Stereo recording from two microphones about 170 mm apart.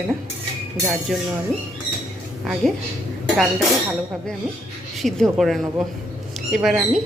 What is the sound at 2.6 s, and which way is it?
Speech, centre (ahead or behind).